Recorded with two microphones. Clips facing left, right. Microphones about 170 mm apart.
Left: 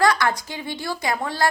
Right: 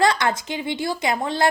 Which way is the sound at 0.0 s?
20° right (ahead or behind).